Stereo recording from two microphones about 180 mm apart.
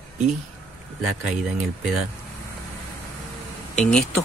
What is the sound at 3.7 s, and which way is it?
Speech, 5° left (ahead or behind).